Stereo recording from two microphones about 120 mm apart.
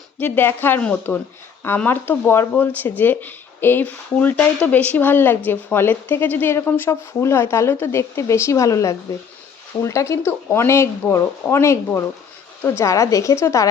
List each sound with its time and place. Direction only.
0.2 s a woman's voice: 15° left (ahead or behind)